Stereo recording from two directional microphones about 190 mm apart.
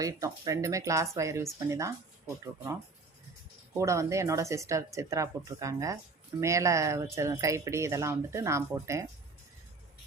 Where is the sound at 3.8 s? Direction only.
15° right (ahead or behind).